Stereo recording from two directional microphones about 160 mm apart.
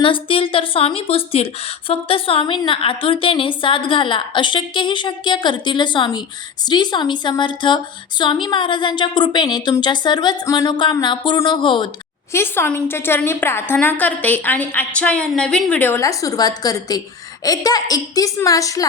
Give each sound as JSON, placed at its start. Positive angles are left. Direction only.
{"t": 0.0, "sound": "a woman's voice", "side_deg": 35}
{"t": 12.3, "sound": "a woman's voice", "side_deg": 15}